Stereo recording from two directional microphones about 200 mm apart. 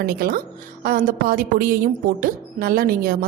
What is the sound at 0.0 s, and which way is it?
A woman's voice, 50° right (ahead or behind).